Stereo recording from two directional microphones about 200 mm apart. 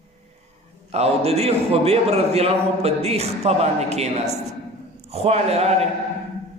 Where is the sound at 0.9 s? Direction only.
30° right (ahead or behind).